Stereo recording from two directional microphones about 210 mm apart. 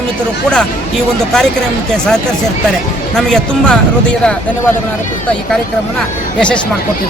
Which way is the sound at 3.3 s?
5° left (ahead or behind).